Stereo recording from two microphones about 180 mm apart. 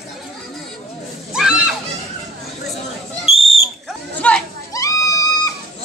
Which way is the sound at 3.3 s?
35° left (ahead or behind).